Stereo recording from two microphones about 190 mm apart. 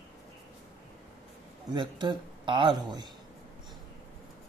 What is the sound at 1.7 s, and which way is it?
Speech, 25° right (ahead or behind).